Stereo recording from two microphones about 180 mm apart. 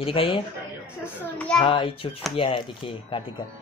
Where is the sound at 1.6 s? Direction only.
25° left (ahead or behind).